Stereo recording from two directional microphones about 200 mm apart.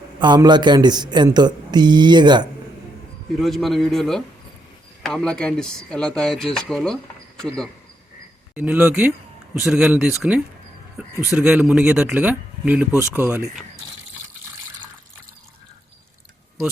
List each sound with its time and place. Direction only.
0.2 s a man's voice: 20° right (ahead or behind)
3.3 s speech: centre (ahead or behind)
8.5 s speech: 10° right (ahead or behind)